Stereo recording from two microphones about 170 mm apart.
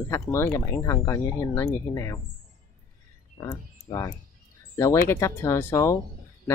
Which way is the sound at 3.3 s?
20° left (ahead or behind).